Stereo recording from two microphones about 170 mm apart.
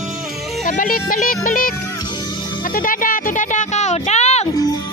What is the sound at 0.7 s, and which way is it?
Music, 55° left (ahead or behind).